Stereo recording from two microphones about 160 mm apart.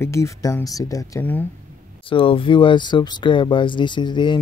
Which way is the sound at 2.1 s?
35° left (ahead or behind).